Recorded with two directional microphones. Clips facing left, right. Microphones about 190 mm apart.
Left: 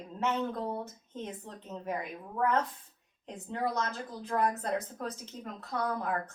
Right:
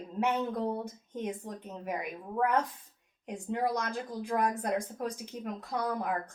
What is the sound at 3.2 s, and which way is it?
A woman's voice, 15° right (ahead or behind).